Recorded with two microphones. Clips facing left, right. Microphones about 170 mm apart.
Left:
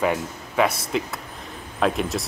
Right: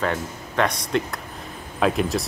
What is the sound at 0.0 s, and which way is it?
Speech, 10° left (ahead or behind).